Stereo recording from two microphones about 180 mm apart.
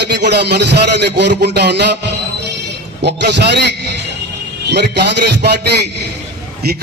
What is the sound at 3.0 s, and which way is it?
Speech, 65° right (ahead or behind).